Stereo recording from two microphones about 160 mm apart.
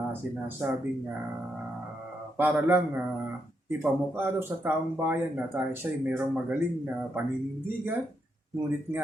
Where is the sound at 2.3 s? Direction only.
10° right (ahead or behind).